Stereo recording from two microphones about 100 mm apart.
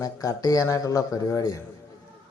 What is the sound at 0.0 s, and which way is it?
Speech, 35° left (ahead or behind).